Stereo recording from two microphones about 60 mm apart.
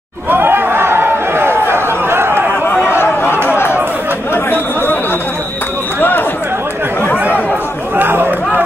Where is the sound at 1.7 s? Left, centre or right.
Right.